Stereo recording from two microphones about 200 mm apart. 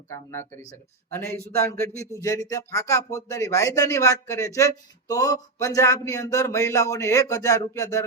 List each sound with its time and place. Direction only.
0.1 s speech: 15° left (ahead or behind)